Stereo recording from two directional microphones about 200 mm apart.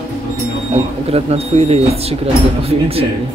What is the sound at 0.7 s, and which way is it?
Speech, 30° right (ahead or behind).